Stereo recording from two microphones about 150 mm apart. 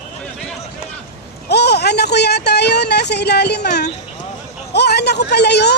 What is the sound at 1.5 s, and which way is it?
Speech, 90° left.